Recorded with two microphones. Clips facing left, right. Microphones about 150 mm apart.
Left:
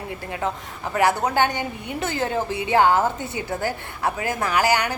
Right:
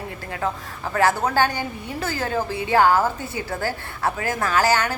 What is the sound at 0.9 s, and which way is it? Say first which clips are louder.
A woman's voice: even; 15° left (ahead or behind).